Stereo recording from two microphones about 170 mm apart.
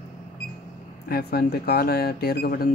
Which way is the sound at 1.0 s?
65° left (ahead or behind).